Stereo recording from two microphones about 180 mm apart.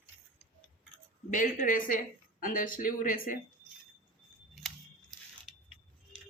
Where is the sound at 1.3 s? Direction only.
45° left (ahead or behind).